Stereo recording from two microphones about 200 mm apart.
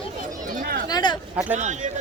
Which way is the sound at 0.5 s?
45° right (ahead or behind).